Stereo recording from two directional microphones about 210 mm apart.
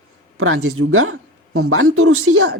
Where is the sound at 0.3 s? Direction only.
90° right.